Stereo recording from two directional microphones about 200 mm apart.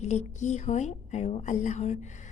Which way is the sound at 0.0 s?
35° left (ahead or behind).